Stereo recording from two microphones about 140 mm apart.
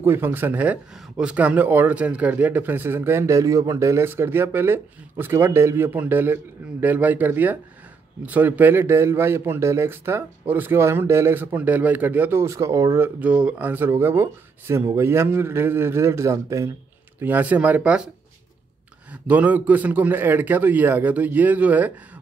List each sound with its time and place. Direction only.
0.0 s a man's voice: 15° right (ahead or behind)
19.2 s a man's voice: 10° right (ahead or behind)